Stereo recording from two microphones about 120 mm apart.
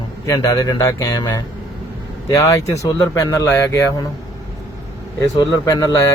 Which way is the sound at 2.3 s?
25° left (ahead or behind).